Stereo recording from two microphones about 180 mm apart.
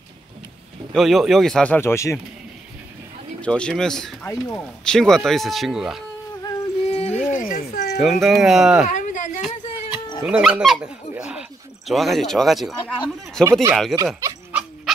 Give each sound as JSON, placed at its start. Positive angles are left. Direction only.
{"t": 0.9, "sound": "speech", "side_deg": 0}
{"t": 3.3, "sound": "speech", "side_deg": 5}
{"t": 4.3, "sound": "speech", "side_deg": 15}
{"t": 4.8, "sound": "speech", "side_deg": 5}
{"t": 6.4, "sound": "music", "side_deg": 35}
{"t": 8.0, "sound": "speech", "side_deg": 0}
{"t": 9.0, "sound": "a sound", "side_deg": 45}
{"t": 10.2, "sound": "speech", "side_deg": -5}
{"t": 13.4, "sound": "speech", "side_deg": -15}